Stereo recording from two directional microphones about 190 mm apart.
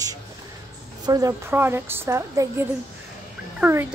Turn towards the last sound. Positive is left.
turn(degrees=-10)  # may be behind; listen again after turning